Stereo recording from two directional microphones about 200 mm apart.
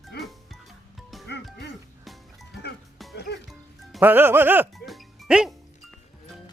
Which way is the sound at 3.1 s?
55° left (ahead or behind).